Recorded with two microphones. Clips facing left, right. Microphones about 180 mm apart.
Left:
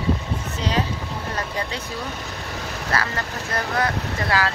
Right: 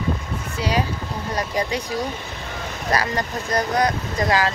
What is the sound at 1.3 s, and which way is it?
Speech, 15° right (ahead or behind).